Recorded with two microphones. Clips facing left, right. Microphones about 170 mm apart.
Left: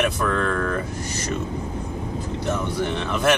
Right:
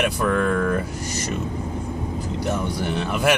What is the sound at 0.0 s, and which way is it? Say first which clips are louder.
Speech: right 1 dB; 10° right (ahead or behind).